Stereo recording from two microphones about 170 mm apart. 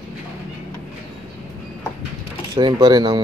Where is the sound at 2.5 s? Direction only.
25° right (ahead or behind).